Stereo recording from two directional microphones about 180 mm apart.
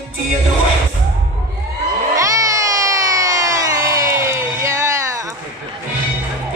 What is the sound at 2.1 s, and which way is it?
Crowd, 15° right (ahead or behind).